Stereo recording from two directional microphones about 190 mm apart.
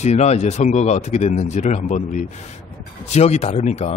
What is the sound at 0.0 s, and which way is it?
Speech, 35° left (ahead or behind).